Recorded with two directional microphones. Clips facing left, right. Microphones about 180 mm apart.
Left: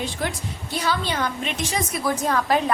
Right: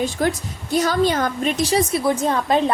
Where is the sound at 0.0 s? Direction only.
45° right (ahead or behind).